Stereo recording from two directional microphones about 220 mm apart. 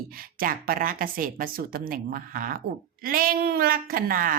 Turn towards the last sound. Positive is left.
turn(degrees=-40)  # may be behind; listen again after turning